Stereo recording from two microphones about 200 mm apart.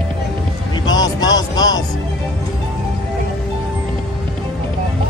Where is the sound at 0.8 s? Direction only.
20° left (ahead or behind).